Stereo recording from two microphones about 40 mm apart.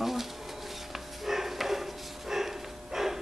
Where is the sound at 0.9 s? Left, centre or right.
Centre.